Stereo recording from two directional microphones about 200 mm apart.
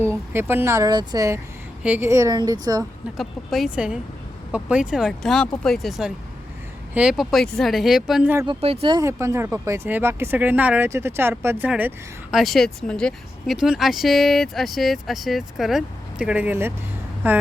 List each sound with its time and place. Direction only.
0.0 s speech: 10° right (ahead or behind)
3.2 s speech: centre (ahead or behind)
8.4 s speech: 30° right (ahead or behind); by 17.4 s 10° right (ahead or behind)